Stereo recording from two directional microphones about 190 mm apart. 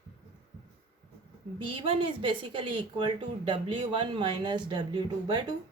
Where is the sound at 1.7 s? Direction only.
30° right (ahead or behind).